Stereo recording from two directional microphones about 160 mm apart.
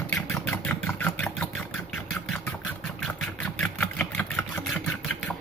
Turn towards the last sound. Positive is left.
turn(degrees=10)  # may be behind; listen again after turning